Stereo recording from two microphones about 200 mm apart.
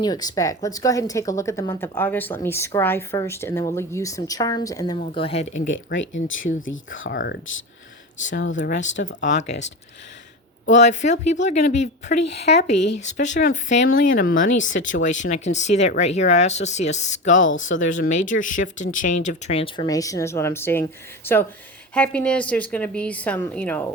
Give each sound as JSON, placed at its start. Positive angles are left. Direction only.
{"t": 0.0, "sound": "a woman's voice", "side_deg": 20}
{"t": 4.9, "sound": "speech", "side_deg": 30}
{"t": 5.6, "sound": "speech", "side_deg": 70}
{"t": 6.5, "sound": "speech", "side_deg": 40}
{"t": 6.9, "sound": "speech", "side_deg": 75}
{"t": 7.2, "sound": "speech", "side_deg": 55}
{"t": 8.5, "sound": "speech", "side_deg": 55}
{"t": 9.2, "sound": "speech", "side_deg": 35}
{"t": 10.7, "sound": "a woman's voice", "side_deg": 35}